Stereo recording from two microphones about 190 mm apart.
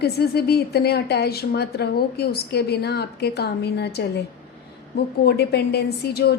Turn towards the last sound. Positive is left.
turn(degrees=55)  # may be behind; listen again after turning